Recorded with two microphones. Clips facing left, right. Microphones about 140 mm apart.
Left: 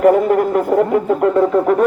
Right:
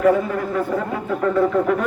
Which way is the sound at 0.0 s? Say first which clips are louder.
Left 6 dB; 60° left (ahead or behind).